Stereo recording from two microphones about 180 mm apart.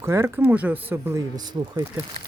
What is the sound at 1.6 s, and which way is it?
Speech, 25° right (ahead or behind).